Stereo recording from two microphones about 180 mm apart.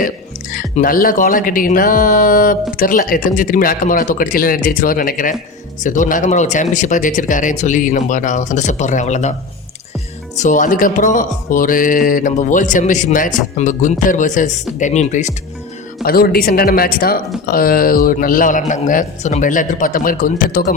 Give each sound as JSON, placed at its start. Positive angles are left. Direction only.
{"t": 0.5, "sound": "music", "side_deg": 50}
{"t": 10.3, "sound": "music", "side_deg": 45}
{"t": 16.0, "sound": "music", "side_deg": 55}